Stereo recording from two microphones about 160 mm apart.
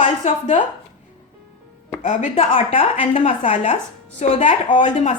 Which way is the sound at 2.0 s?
50° left (ahead or behind).